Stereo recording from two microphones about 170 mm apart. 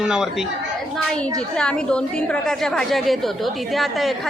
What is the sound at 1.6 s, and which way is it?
A woman's voice, 5° left (ahead or behind).